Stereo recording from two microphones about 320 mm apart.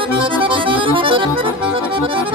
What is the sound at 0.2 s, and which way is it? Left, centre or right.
Accordion, centre.